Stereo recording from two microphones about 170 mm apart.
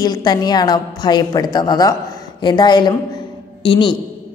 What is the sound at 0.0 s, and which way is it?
A woman's voice, 25° left (ahead or behind).